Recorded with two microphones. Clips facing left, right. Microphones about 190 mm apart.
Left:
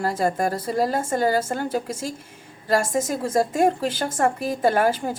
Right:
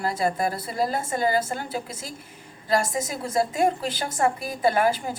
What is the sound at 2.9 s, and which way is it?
A woman's voice, 45° left (ahead or behind).